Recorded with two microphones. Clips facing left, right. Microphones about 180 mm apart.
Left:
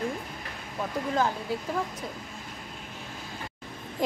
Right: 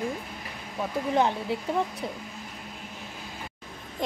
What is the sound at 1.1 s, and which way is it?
Speech, 25° right (ahead or behind).